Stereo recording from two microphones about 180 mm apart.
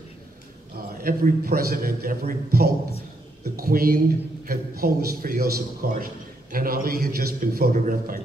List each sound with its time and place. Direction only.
1.0 s a man's voice: 55° right (ahead or behind)